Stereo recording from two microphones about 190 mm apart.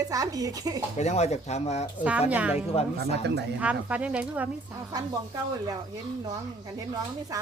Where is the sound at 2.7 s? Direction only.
30° left (ahead or behind).